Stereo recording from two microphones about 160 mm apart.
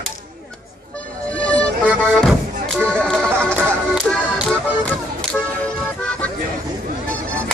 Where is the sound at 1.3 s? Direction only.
10° left (ahead or behind).